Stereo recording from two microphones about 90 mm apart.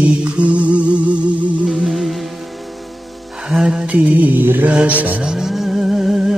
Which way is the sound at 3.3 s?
5° right (ahead or behind).